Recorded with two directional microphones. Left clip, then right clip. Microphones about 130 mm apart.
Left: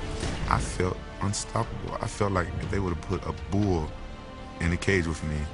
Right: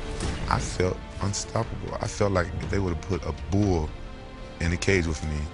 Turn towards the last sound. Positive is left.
turn(degrees=-40)  # may be behind; listen again after turning